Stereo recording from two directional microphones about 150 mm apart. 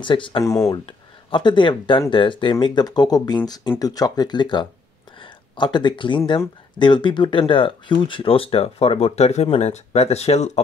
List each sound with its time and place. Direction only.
0.0 s speech: 35° left (ahead or behind)